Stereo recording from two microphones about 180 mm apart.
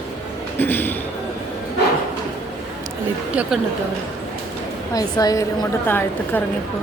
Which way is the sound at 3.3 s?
5° right (ahead or behind).